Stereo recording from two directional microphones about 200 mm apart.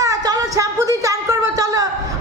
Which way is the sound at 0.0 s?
15° right (ahead or behind).